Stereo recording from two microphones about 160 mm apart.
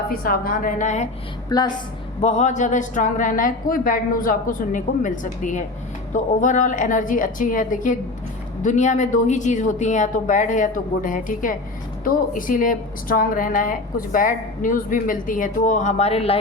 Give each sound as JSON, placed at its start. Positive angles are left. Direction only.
{"t": 0.1, "sound": "a woman's voice", "side_deg": 65}
{"t": 1.5, "sound": "a woman's voice", "side_deg": 25}
{"t": 2.2, "sound": "a woman's voice", "side_deg": 45}